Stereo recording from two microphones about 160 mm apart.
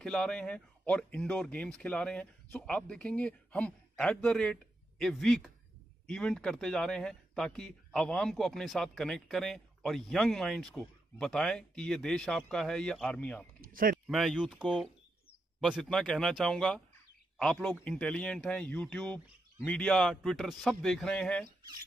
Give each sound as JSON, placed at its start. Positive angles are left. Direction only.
{"t": 0.0, "sound": "a man's voice", "side_deg": 5}
{"t": 13.6, "sound": "a sound", "side_deg": -65}
{"t": 14.0, "sound": "a man's voice", "side_deg": 0}